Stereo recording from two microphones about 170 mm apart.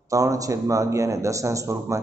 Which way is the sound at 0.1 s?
20° right (ahead or behind).